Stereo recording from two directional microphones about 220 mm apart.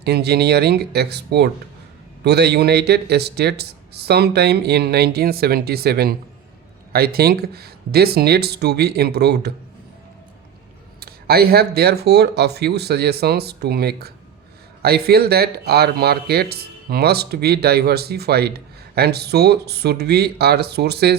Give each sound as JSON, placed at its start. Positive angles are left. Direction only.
{"t": 0.0, "sound": "speech", "side_deg": -50}
{"t": 11.0, "sound": "speech", "side_deg": -45}